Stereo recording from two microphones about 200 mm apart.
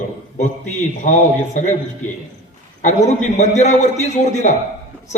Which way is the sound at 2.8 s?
35° left (ahead or behind).